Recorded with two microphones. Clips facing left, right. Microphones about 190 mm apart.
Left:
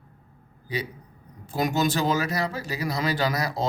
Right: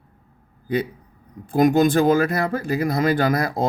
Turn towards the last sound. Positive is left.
turn(degrees=-55)  # may be behind; listen again after turning